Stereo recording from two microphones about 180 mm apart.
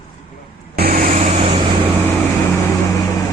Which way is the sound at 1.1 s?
40° right (ahead or behind).